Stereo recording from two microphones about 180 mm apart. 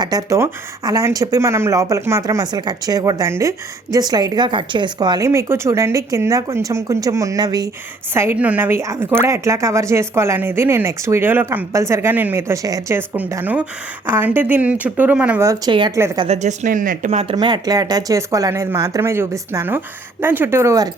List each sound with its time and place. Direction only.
0.0 s a woman's voice: 20° right (ahead or behind)
16.2 s speech: 40° right (ahead or behind)
17.3 s a woman's voice: 20° right (ahead or behind)